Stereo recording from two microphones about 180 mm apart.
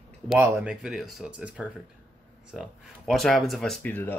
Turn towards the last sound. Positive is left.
turn(degrees=10)  # may be behind; listen again after turning